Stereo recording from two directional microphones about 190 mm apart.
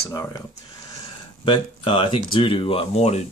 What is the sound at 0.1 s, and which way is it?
Speech, 20° left (ahead or behind).